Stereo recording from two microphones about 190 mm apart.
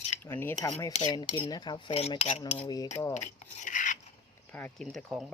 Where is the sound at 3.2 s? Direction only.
40° left (ahead or behind).